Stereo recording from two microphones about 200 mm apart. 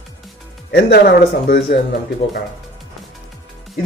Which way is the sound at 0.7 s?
55° left (ahead or behind).